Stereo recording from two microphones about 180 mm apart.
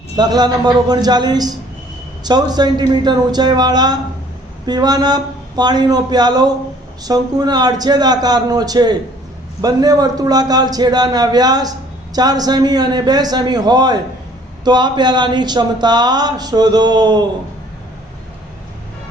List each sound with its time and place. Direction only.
0.2 s speech: 20° right (ahead or behind)